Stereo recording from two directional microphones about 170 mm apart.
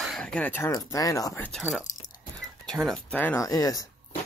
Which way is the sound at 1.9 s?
45° left (ahead or behind).